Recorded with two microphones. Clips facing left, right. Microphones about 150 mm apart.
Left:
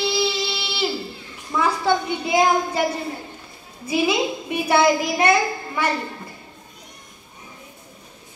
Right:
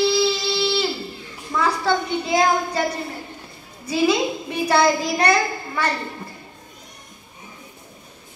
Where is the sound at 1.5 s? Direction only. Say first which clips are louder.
Left 1 dB; 10° left (ahead or behind).